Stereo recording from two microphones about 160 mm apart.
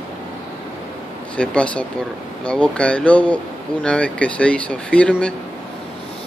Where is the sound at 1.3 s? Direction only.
5° left (ahead or behind).